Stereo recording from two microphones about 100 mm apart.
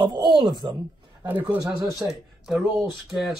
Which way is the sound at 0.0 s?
50° right (ahead or behind).